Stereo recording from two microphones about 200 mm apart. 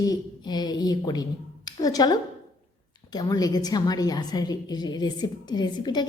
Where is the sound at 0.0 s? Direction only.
20° left (ahead or behind).